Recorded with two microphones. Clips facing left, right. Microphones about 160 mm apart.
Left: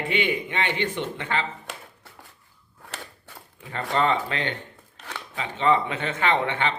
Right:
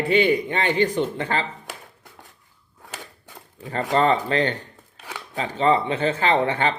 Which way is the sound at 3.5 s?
40° right (ahead or behind).